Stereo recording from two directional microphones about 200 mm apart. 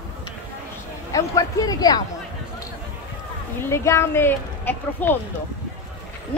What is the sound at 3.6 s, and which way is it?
A woman's voice, 15° left (ahead or behind).